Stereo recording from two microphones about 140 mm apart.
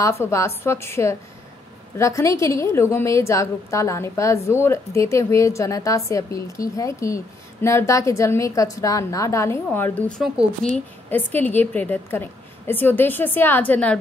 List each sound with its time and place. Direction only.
0.0 s a woman's voice: 20° left (ahead or behind)
10.1 s speech: centre (ahead or behind)
11.1 s a woman's voice: 15° left (ahead or behind)